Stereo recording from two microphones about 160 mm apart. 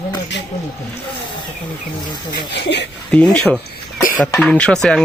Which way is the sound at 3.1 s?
5° left (ahead or behind).